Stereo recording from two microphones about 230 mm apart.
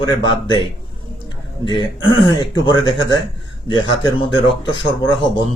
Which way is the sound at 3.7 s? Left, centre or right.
Left.